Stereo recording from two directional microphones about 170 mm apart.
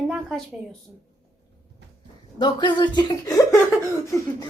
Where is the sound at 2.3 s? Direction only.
25° left (ahead or behind).